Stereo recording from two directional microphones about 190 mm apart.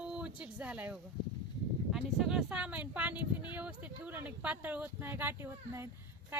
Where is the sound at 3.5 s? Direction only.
10° right (ahead or behind).